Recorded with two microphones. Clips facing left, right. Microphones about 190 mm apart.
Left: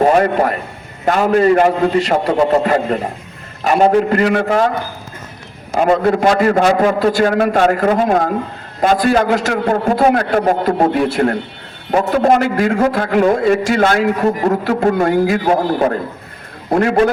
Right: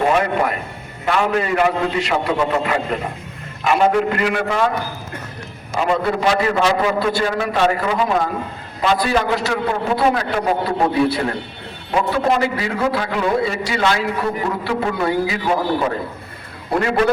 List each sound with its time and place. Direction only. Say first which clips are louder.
0.0 s a man's voice: left 5 dB; 40° left (ahead or behind)
5.7 s a man's voice: left 6 dB; 50° left (ahead or behind)
16.7 s a man's voice: left 5 dB; 45° left (ahead or behind)